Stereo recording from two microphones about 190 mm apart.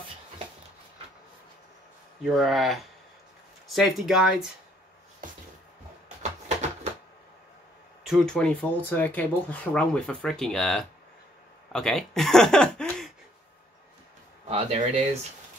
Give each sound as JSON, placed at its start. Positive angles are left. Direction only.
{"t": 2.2, "sound": "speech", "side_deg": 0}
{"t": 5.2, "sound": "music", "side_deg": -45}
{"t": 8.1, "sound": "speech", "side_deg": 5}
{"t": 14.5, "sound": "speech", "side_deg": -35}